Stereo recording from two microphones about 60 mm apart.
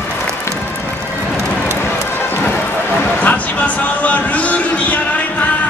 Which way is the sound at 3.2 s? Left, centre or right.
Left.